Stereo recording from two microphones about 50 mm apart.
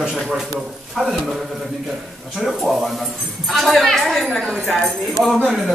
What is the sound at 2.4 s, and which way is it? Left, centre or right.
Speech, centre.